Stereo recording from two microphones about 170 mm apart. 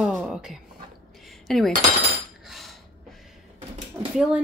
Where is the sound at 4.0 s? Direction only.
15° right (ahead or behind).